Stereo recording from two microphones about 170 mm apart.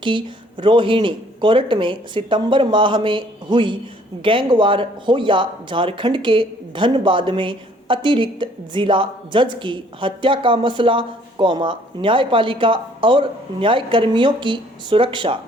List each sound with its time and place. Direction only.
0.0 s speech: 30° right (ahead or behind)